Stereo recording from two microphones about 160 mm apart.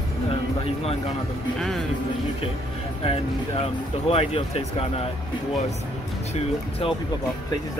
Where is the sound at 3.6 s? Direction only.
40° left (ahead or behind).